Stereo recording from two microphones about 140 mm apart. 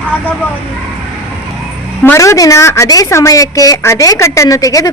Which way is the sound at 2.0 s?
20° left (ahead or behind).